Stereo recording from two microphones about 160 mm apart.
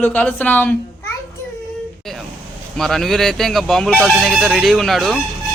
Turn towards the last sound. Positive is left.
turn(degrees=0)  # may be behind; listen again after turning